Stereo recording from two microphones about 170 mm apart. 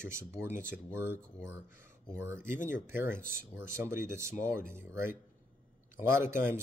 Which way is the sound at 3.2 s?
60° right (ahead or behind).